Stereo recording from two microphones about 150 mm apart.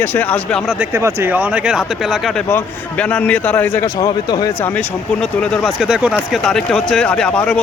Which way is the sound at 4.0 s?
25° left (ahead or behind).